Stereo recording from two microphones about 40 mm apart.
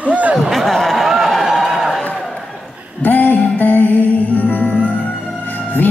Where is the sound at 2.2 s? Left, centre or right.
Centre.